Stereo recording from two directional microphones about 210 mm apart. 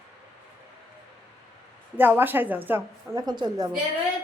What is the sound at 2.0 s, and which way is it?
A woman's voice, 10° right (ahead or behind).